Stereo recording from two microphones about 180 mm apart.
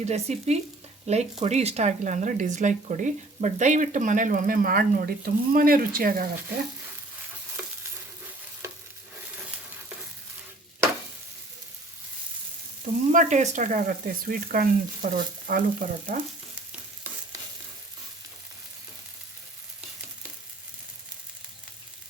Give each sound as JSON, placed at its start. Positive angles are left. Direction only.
{"t": 0.0, "sound": "speech", "side_deg": -40}
{"t": 12.8, "sound": "speech", "side_deg": -40}